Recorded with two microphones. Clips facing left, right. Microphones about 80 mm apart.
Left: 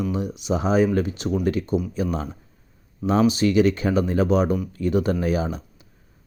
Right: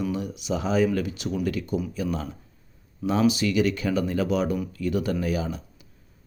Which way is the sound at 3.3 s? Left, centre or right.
Left.